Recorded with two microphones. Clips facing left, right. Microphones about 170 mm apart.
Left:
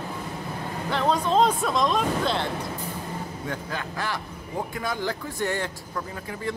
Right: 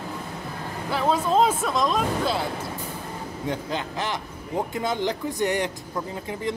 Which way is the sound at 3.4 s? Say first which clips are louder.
Right 7 dB; 20° right (ahead or behind).